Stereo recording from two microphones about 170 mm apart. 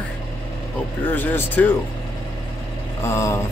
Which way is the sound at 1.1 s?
10° left (ahead or behind).